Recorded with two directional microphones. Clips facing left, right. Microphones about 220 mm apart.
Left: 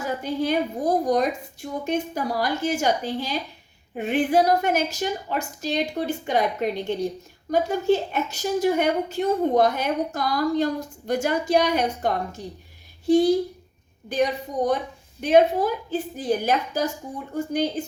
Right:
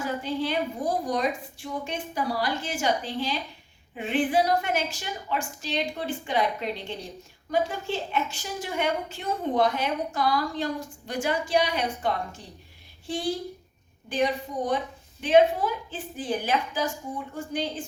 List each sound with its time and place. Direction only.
0.2 s a woman's voice: 45° left (ahead or behind)